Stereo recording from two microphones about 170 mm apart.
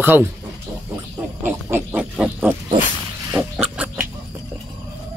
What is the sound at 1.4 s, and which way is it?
Pig, 10° right (ahead or behind).